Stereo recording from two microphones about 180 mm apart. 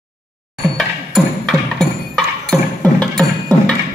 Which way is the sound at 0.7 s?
Centre (ahead or behind).